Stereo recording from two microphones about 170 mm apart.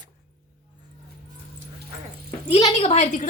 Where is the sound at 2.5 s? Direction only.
35° left (ahead or behind).